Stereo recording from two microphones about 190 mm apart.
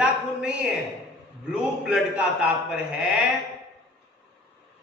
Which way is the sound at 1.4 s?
5° right (ahead or behind).